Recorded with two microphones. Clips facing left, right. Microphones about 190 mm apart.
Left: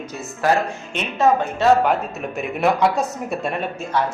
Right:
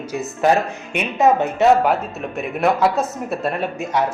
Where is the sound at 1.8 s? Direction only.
5° right (ahead or behind).